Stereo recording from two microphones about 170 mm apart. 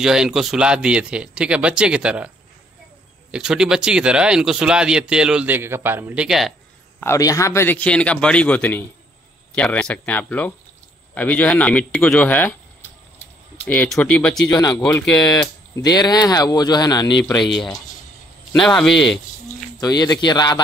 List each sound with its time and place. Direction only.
0.0 s speech: 5° right (ahead or behind)
7.0 s a man's voice: 20° left (ahead or behind)
13.7 s a man's voice: 5° left (ahead or behind)
14.5 s speech: 20° left (ahead or behind)
18.5 s speech: 5° left (ahead or behind)
19.8 s speech: 25° left (ahead or behind)